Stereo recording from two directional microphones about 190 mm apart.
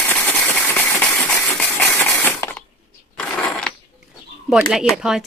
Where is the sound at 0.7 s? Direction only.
10° left (ahead or behind).